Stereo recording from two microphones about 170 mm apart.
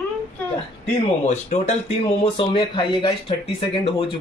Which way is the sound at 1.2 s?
40° left (ahead or behind).